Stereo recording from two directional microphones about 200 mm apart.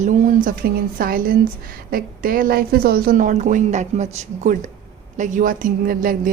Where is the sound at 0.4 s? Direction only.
45° right (ahead or behind).